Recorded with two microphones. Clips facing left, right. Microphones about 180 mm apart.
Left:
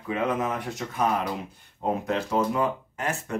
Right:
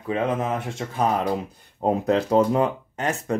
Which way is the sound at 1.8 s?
35° right (ahead or behind).